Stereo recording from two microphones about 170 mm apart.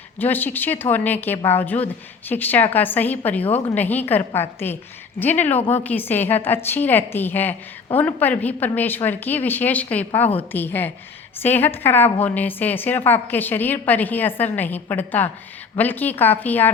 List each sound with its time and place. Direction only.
0.2 s a woman's voice: 10° left (ahead or behind)